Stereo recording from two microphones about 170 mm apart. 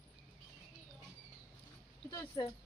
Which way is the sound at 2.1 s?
25° left (ahead or behind).